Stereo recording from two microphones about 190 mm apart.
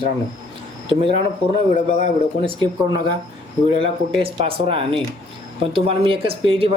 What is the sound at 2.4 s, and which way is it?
A man's voice, 25° right (ahead or behind).